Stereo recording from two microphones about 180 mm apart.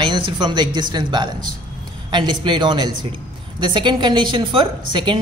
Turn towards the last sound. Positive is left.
turn(degrees=-25)  # may be behind; listen again after turning